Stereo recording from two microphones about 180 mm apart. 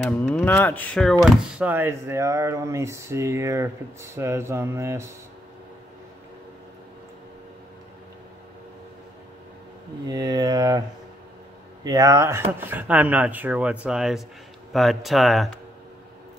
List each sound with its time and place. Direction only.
0.0 s speech: 5° left (ahead or behind)
1.2 s speech: 5° right (ahead or behind)
10.0 s a sound: 20° right (ahead or behind)
11.8 s speech: 20° right (ahead or behind); by 15.5 s centre (ahead or behind)